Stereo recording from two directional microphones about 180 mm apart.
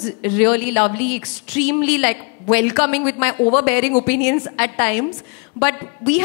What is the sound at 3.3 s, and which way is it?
Speech, 25° left (ahead or behind).